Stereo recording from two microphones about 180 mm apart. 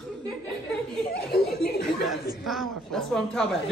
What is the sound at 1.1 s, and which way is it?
Chuckle, 65° left (ahead or behind).